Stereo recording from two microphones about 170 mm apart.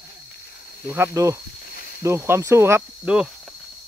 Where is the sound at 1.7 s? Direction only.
65° left (ahead or behind).